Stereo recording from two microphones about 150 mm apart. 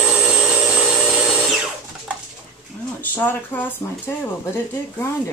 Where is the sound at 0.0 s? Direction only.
5° right (ahead or behind).